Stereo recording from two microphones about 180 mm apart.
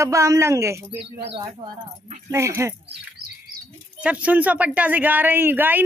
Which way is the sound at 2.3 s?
15° right (ahead or behind).